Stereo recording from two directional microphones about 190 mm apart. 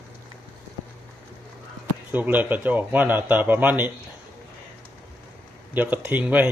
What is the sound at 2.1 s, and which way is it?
Speech, 10° right (ahead or behind).